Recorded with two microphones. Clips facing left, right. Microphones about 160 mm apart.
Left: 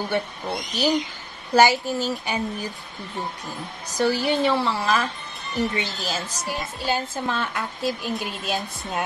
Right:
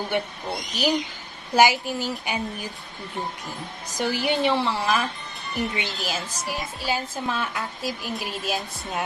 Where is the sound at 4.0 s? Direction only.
15° right (ahead or behind).